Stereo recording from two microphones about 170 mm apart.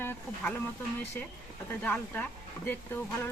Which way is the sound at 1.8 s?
10° left (ahead or behind).